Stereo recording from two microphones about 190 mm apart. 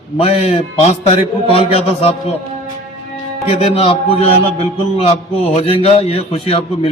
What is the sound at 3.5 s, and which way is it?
A man's voice, 30° left (ahead or behind).